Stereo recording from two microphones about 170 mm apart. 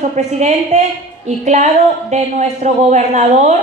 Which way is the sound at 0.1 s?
45° right (ahead or behind).